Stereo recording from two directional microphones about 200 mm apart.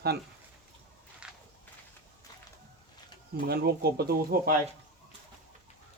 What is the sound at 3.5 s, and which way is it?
Speech, 50° right (ahead or behind).